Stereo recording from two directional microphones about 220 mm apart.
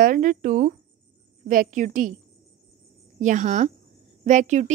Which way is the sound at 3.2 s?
35° right (ahead or behind).